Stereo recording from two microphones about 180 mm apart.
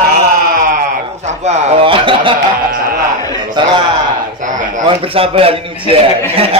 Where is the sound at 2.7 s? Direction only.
55° right (ahead or behind).